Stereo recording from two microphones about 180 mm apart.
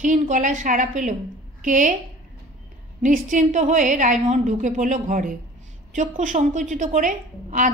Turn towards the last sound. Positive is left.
turn(degrees=-45)  # may be behind; listen again after turning